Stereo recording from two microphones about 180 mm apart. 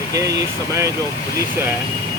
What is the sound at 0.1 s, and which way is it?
Speech, 20° right (ahead or behind).